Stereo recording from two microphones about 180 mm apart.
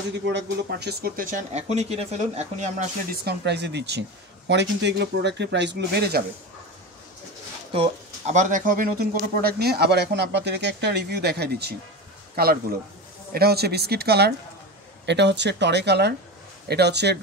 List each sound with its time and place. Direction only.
0.3 s speech: 70° right (ahead or behind); by 2.7 s 35° right (ahead or behind)
3.1 s speech: 65° right (ahead or behind)
7.7 s speech: 40° right (ahead or behind)
9.4 s speech: 60° right (ahead or behind)
15.0 s speech: 75° right (ahead or behind)